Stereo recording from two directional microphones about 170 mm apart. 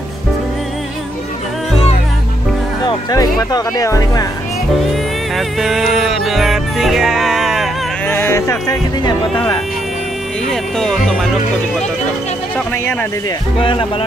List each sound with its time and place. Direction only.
2.9 s speech: 20° left (ahead or behind)
5.3 s music: centre (ahead or behind)
8.1 s speech: 15° left (ahead or behind)
10.5 s speech: 5° left (ahead or behind)
13.6 s speech: 30° left (ahead or behind)